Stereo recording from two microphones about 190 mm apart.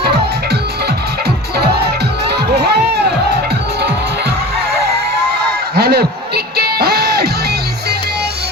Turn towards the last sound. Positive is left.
turn(degrees=-55)  # may be behind; listen again after turning